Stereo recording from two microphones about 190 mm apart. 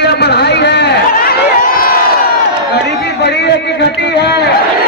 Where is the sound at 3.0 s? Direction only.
60° left (ahead or behind).